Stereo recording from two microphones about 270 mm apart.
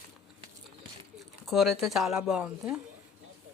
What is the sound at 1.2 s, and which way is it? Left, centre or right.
Speech, centre.